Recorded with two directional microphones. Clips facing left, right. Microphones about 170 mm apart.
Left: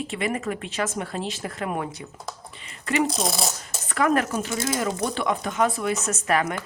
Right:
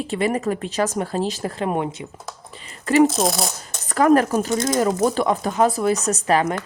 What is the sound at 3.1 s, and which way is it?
Speech, centre (ahead or behind).